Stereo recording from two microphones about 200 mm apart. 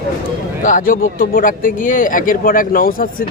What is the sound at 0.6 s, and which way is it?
A man's voice, 40° left (ahead or behind).